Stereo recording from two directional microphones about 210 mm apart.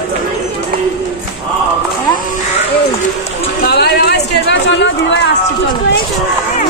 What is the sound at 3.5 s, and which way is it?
Speech, 50° left (ahead or behind).